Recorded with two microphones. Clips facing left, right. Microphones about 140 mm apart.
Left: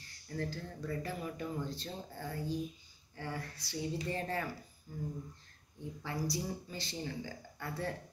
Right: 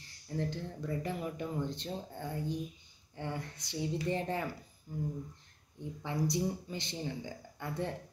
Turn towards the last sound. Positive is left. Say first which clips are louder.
# right 2 dB
turn(degrees=-20)  # may be behind; listen again after turning